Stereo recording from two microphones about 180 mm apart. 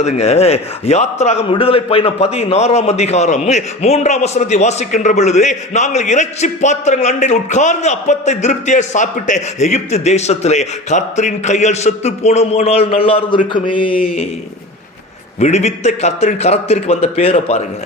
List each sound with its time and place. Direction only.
0.0 s a man's voice: 35° left (ahead or behind)
15.4 s a man's voice: 40° left (ahead or behind)